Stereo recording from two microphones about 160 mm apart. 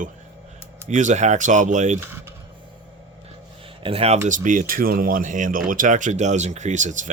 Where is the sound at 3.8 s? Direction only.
35° right (ahead or behind).